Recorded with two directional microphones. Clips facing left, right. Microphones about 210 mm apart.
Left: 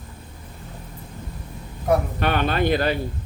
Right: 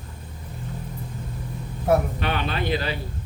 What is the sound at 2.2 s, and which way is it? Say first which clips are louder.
Speech: left 5 dB; 50° left (ahead or behind).